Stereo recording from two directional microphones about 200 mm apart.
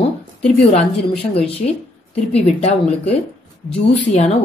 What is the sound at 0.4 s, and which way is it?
Speech, 30° left (ahead or behind).